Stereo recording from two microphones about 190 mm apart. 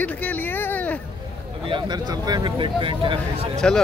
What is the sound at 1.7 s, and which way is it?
Speech, 20° right (ahead or behind).